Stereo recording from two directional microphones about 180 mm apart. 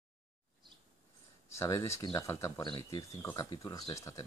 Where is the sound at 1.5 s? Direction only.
15° left (ahead or behind).